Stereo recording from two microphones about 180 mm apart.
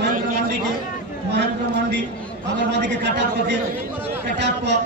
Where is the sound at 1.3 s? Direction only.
70° right (ahead or behind).